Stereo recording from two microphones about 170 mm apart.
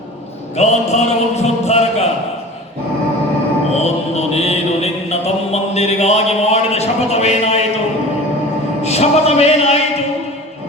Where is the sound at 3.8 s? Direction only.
40° left (ahead or behind).